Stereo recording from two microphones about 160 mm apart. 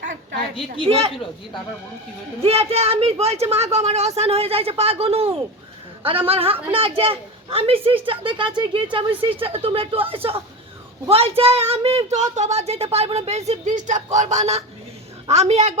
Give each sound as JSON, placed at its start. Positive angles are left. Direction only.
{"t": 0.9, "sound": "a woman's voice", "side_deg": -40}
{"t": 2.4, "sound": "a woman's voice", "side_deg": -40}